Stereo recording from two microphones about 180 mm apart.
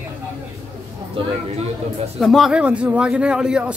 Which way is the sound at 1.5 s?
35° right (ahead or behind).